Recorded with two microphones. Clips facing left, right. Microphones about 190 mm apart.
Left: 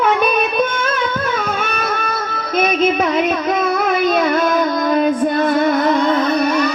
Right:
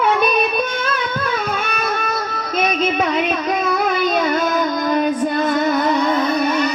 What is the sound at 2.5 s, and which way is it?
Music, 50° left (ahead or behind).